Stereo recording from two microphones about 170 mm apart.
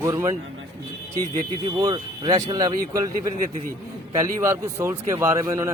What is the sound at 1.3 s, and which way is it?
Speech, 25° right (ahead or behind).